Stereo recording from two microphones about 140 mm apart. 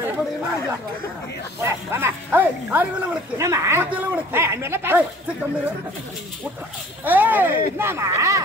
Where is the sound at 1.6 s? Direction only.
15° right (ahead or behind).